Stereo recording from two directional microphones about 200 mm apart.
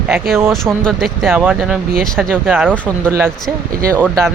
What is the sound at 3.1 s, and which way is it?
Speech, 10° right (ahead or behind).